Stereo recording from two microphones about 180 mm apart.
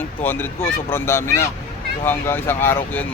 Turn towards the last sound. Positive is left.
turn(degrees=10)  # may be behind; listen again after turning